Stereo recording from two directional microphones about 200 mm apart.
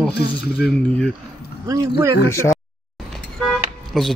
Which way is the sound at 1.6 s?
15° right (ahead or behind).